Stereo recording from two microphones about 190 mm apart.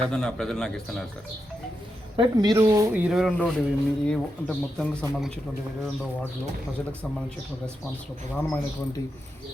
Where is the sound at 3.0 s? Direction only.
5° right (ahead or behind).